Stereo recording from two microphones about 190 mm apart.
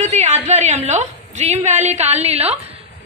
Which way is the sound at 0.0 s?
35° right (ahead or behind).